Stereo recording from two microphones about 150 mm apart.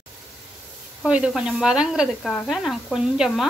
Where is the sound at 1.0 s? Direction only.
5° right (ahead or behind).